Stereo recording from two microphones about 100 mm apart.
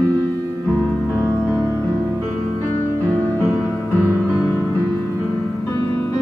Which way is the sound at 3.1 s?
20° left (ahead or behind).